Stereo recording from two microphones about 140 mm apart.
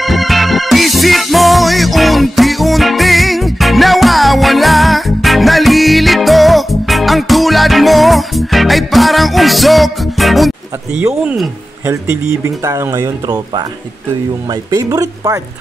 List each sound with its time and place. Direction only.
0.0 s music: centre (ahead or behind)
11.1 s speech: 5° right (ahead or behind)
11.8 s speech: 20° right (ahead or behind)